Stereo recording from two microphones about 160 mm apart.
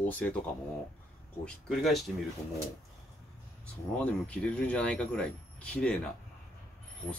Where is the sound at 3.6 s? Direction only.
10° left (ahead or behind).